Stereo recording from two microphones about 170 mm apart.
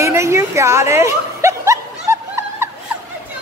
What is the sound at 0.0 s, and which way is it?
Chuckle, 15° right (ahead or behind).